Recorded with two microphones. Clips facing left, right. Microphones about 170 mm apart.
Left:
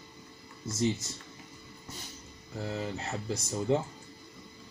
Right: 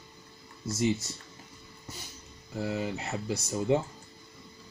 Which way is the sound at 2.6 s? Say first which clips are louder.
Right 3 dB; 5° right (ahead or behind).